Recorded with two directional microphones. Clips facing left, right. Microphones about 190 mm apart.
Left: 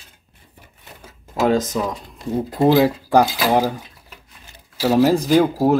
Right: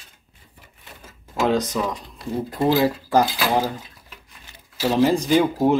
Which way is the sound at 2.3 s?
15° left (ahead or behind).